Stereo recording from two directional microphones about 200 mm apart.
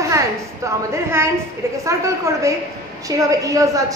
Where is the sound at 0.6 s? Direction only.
15° right (ahead or behind).